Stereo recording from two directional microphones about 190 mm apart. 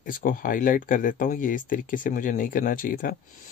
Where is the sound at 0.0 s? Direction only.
45° left (ahead or behind).